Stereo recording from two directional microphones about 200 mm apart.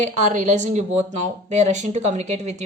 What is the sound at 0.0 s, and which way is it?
Speech, 35° right (ahead or behind).